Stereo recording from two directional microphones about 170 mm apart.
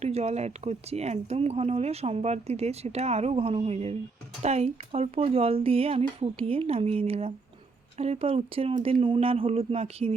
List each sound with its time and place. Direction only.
0.0 s speech: 40° right (ahead or behind)